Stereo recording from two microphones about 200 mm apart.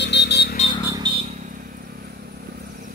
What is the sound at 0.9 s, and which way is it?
Vehicle, 25° right (ahead or behind).